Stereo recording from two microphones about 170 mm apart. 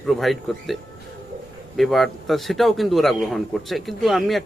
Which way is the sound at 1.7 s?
Centre (ahead or behind).